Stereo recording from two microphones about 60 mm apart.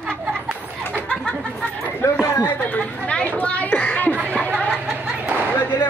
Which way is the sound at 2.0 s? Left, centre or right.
Left.